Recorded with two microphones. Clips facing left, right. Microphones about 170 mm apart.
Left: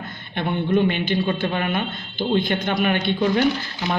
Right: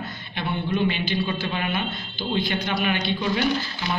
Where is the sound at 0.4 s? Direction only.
50° left (ahead or behind).